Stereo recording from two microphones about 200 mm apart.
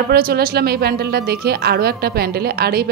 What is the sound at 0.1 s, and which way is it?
A woman's voice, 50° right (ahead or behind).